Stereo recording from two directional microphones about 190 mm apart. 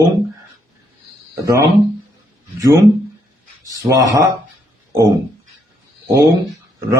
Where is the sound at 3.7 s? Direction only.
20° right (ahead or behind).